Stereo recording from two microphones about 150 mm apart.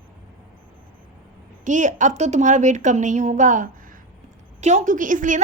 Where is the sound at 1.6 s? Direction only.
55° right (ahead or behind).